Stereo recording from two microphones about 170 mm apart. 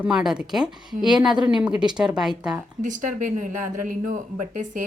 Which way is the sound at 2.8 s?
50° right (ahead or behind).